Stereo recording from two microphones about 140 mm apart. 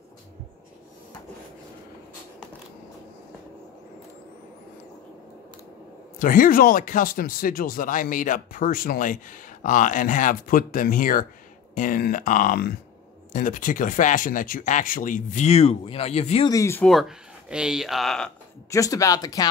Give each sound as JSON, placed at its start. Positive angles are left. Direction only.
{"t": 6.1, "sound": "speech", "side_deg": 75}
{"t": 13.3, "sound": "speech", "side_deg": 65}
{"t": 16.4, "sound": "speech", "side_deg": 20}
{"t": 16.8, "sound": "speech", "side_deg": 0}
{"t": 18.7, "sound": "speech", "side_deg": 25}